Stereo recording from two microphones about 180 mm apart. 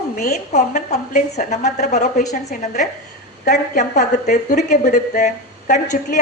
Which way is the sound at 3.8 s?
45° left (ahead or behind).